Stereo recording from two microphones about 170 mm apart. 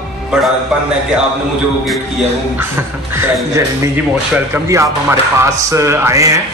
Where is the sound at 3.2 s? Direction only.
20° right (ahead or behind).